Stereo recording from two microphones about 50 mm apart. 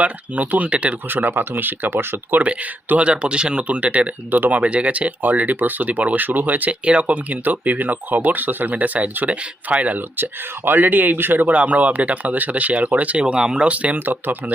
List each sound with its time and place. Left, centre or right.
0.0 s speech: right
1.0 s speech: right
2.4 s speech: right
13.2 s speech: centre
13.7 s speech: right
14.0 s speech: right